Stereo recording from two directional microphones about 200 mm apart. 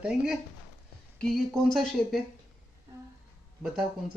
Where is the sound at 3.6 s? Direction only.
Centre (ahead or behind).